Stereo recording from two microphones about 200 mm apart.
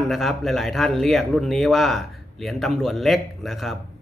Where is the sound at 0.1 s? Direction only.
Centre (ahead or behind).